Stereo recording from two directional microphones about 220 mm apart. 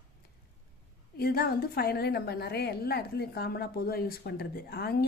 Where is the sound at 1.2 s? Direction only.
45° left (ahead or behind).